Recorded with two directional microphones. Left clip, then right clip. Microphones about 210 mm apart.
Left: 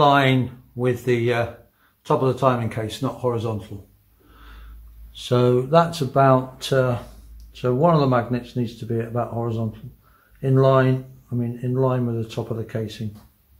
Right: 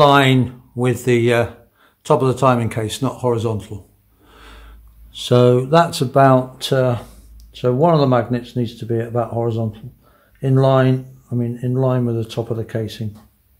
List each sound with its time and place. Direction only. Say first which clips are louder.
0.0 s speech: right 4 dB; 45° right (ahead or behind)
5.1 s speech: right 6 dB; 40° right (ahead or behind)